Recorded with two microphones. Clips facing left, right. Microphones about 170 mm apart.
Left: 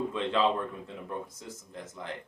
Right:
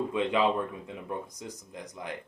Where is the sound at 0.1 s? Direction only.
15° right (ahead or behind).